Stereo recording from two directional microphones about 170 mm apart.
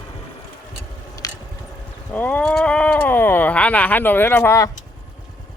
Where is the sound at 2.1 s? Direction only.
10° left (ahead or behind).